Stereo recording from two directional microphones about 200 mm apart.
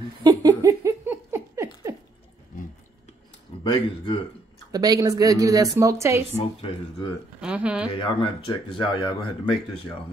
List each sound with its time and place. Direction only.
0.2 s a sound: 20° right (ahead or behind)
3.7 s speech: 25° left (ahead or behind)
4.7 s a woman's voice: 20° right (ahead or behind)
6.3 s speech: 25° left (ahead or behind)
7.3 s speech: 5° right (ahead or behind)
7.9 s speech: 25° left (ahead or behind)